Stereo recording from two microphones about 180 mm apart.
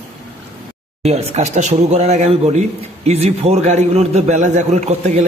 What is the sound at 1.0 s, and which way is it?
A man's voice, 35° right (ahead or behind).